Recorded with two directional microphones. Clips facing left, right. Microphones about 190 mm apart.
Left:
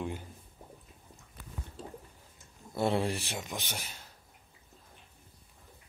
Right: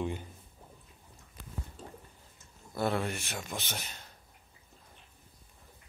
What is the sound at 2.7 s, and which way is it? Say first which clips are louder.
Speech: left 2 dB; 25° left (ahead or behind).